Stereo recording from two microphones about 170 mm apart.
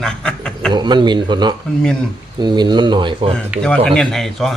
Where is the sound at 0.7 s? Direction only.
25° right (ahead or behind).